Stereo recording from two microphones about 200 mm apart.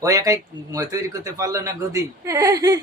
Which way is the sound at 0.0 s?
15° right (ahead or behind).